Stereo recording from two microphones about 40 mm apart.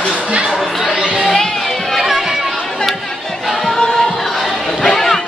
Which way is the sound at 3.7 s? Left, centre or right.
Centre.